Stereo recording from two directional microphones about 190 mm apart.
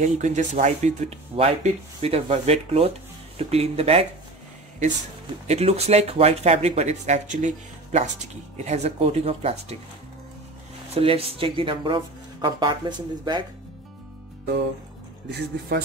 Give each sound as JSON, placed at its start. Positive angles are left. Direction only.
{"t": 0.0, "sound": "speech", "side_deg": -40}
{"t": 5.5, "sound": "speech", "side_deg": -35}
{"t": 11.0, "sound": "speech", "side_deg": -30}
{"t": 15.2, "sound": "speech", "side_deg": -60}